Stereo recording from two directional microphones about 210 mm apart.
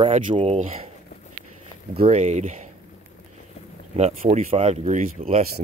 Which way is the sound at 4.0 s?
30° right (ahead or behind).